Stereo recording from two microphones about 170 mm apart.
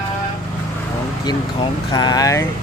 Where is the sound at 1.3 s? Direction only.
25° left (ahead or behind).